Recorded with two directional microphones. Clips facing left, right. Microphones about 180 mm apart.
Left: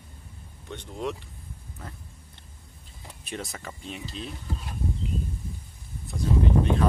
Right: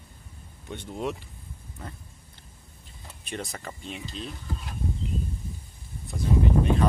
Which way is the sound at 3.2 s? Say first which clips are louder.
Right 1 dB; centre (ahead or behind).